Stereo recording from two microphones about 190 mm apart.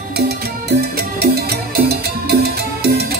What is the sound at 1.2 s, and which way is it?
Music, 55° right (ahead or behind).